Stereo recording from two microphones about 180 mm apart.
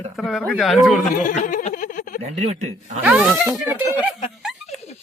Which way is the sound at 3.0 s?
5° right (ahead or behind).